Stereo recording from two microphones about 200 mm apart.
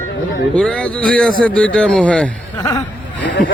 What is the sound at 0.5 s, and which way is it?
A man's voice, 5° left (ahead or behind).